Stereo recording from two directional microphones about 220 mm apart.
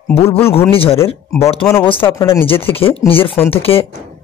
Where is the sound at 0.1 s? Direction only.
25° left (ahead or behind).